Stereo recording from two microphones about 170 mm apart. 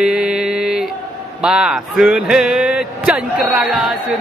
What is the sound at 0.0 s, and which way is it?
Mantra, 5° right (ahead or behind).